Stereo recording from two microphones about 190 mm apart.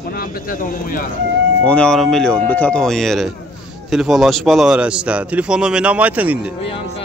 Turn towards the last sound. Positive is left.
turn(degrees=-10)  # may be behind; listen again after turning